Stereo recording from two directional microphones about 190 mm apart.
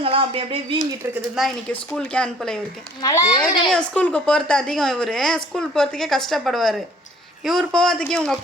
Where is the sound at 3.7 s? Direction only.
5° left (ahead or behind).